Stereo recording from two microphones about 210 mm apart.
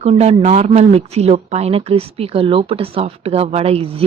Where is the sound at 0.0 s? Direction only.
30° right (ahead or behind).